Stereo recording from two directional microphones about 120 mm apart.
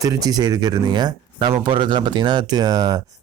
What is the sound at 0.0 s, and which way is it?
Speech, 30° right (ahead or behind).